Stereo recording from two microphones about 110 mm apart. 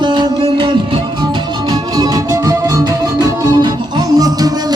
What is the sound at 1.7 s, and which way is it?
Music, 35° right (ahead or behind).